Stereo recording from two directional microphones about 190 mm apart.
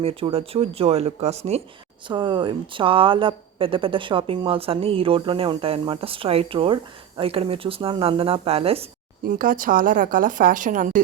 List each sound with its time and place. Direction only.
0.0 s a woman's voice: 30° right (ahead or behind)
9.2 s speech: 45° right (ahead or behind)